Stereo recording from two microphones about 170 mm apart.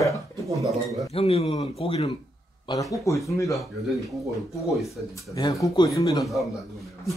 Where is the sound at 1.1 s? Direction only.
35° left (ahead or behind).